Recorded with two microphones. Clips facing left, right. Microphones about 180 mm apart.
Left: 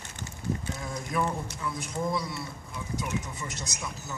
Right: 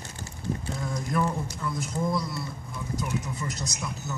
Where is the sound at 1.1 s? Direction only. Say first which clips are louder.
Right 2 dB; centre (ahead or behind).